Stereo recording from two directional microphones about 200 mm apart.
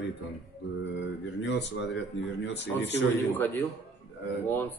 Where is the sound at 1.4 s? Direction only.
60° left (ahead or behind).